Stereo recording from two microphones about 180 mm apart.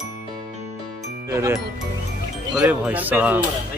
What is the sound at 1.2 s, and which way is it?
Speech, 15° right (ahead or behind).